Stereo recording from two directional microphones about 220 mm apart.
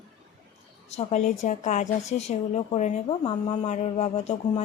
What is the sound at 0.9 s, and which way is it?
Speech, 30° left (ahead or behind).